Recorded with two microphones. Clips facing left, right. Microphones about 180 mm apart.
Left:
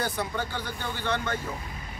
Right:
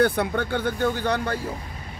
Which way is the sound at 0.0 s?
60° right (ahead or behind).